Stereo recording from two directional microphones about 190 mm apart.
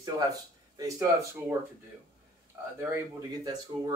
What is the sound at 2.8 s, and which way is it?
Speech, 15° right (ahead or behind).